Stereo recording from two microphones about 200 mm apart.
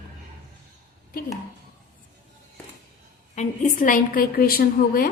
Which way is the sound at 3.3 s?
35° left (ahead or behind).